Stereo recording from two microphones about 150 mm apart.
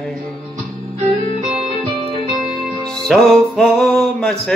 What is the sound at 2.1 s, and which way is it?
Music, centre (ahead or behind).